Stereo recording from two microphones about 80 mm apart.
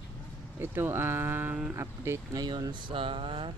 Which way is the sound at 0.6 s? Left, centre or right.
Right.